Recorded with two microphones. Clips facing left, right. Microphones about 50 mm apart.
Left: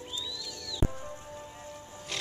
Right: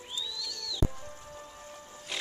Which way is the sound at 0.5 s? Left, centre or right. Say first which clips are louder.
Right 1 dB; right.